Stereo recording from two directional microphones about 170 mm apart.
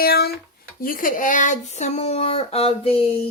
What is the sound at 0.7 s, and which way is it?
Speech, 55° left (ahead or behind).